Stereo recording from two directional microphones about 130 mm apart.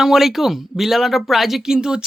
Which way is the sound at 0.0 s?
Centre (ahead or behind).